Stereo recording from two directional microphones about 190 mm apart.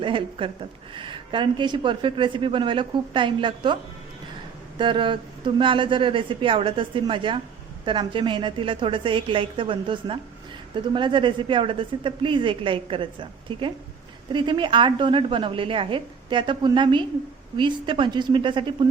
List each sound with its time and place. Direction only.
0.0 s a woman's voice: 25° right (ahead or behind)
4.8 s a woman's voice: 25° right (ahead or behind)